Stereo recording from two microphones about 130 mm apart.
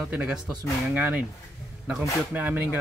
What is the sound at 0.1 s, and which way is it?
Speech, 10° right (ahead or behind).